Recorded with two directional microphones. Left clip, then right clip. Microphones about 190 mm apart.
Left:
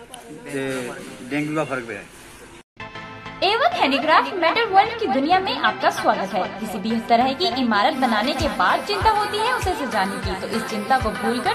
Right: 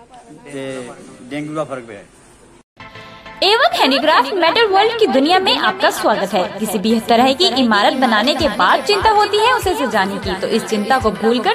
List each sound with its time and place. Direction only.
1.3 s a man's voice: 25° right (ahead or behind)
3.3 s a woman's voice: 50° right (ahead or behind)